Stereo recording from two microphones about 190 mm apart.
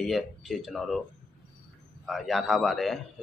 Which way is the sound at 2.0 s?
Centre (ahead or behind).